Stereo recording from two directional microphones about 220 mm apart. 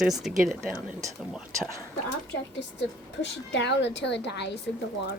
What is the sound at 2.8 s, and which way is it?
Speech, 55° left (ahead or behind).